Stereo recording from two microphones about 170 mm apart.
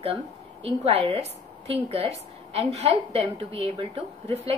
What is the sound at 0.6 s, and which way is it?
A woman's voice, 35° right (ahead or behind).